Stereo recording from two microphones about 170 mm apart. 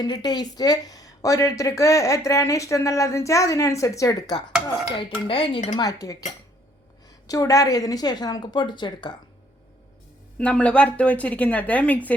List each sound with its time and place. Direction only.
0.0 s speech: 25° left (ahead or behind)
7.3 s speech: 20° left (ahead or behind)
10.3 s a woman's voice: 5° left (ahead or behind)